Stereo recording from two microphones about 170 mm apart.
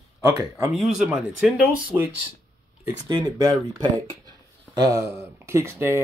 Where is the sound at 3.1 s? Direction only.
20° right (ahead or behind).